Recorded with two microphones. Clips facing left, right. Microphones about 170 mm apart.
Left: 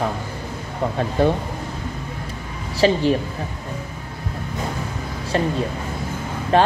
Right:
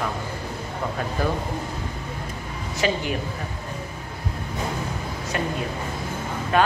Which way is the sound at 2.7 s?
30° left (ahead or behind).